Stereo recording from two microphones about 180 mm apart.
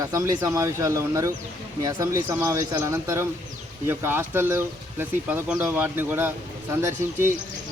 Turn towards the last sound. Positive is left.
turn(degrees=-15)  # may be behind; listen again after turning